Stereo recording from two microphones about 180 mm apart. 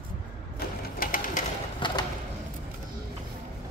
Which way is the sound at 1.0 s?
50° left (ahead or behind).